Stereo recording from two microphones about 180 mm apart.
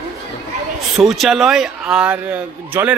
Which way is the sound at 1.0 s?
Centre (ahead or behind).